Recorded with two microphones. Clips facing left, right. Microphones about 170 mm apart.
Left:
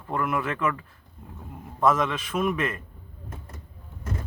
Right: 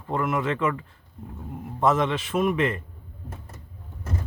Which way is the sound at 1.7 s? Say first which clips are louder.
Right 1 dB; 25° right (ahead or behind).